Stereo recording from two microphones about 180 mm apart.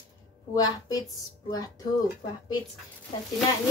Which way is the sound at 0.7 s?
20° left (ahead or behind).